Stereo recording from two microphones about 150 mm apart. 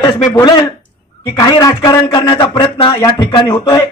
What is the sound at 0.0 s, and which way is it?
A man's voice, 25° left (ahead or behind).